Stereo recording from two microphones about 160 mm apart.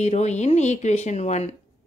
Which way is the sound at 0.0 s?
45° left (ahead or behind).